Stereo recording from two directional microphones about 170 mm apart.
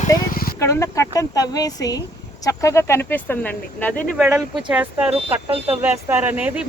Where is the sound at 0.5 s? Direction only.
20° left (ahead or behind).